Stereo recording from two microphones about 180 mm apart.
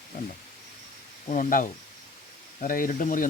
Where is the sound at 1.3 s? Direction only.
45° left (ahead or behind).